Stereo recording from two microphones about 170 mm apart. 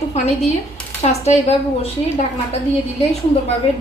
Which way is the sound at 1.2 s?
40° left (ahead or behind).